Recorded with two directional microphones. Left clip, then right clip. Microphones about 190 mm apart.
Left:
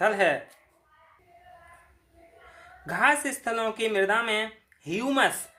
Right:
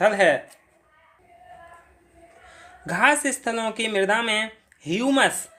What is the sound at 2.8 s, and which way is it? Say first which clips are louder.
Speech: right 4 dB; 40° right (ahead or behind).